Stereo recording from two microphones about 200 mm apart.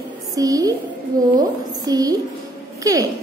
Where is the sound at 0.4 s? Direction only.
15° right (ahead or behind).